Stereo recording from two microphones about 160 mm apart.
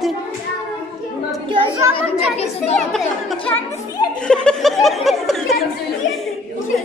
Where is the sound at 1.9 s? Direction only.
40° left (ahead or behind).